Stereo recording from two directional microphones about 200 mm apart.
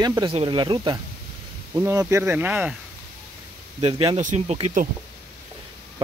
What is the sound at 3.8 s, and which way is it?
Speech, 30° right (ahead or behind).